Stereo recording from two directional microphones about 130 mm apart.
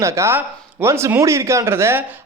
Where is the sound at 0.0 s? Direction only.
20° right (ahead or behind).